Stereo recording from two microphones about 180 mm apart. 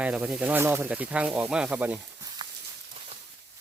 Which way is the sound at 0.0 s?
5° right (ahead or behind).